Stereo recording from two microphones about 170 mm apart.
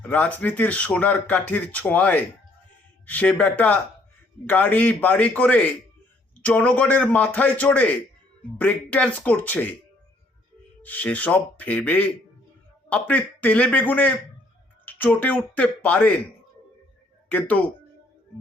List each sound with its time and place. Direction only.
0.0 s speech: 10° left (ahead or behind)
10.8 s speech: 10° left (ahead or behind)
17.2 s speech: 10° left (ahead or behind)